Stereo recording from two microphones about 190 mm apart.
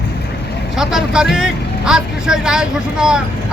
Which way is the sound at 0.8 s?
Centre (ahead or behind).